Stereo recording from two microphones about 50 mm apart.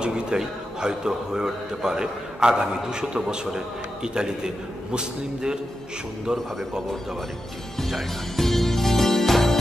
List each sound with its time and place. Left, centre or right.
0.0 s a man's voice: centre
7.8 s music: centre